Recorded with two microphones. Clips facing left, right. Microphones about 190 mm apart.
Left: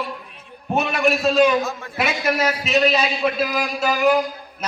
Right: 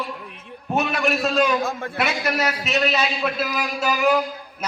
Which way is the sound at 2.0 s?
Centre (ahead or behind).